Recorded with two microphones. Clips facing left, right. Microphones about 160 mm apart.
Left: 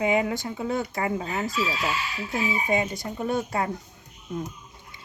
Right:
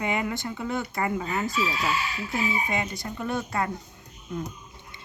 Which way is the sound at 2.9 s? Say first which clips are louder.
Left 3 dB; 15° left (ahead or behind).